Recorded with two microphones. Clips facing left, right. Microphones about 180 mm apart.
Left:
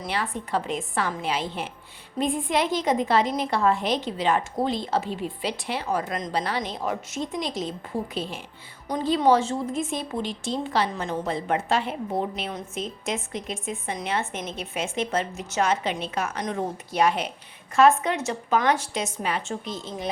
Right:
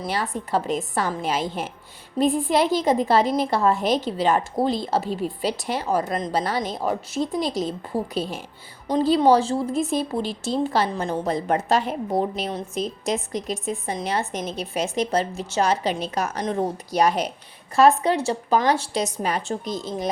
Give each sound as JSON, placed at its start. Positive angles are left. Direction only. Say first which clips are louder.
{"t": 0.0, "sound": "a woman's voice", "louder": "right 3 dB", "side_deg": -40}